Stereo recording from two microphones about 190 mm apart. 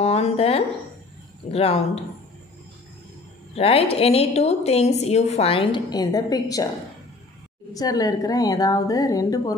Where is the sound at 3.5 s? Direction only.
30° left (ahead or behind).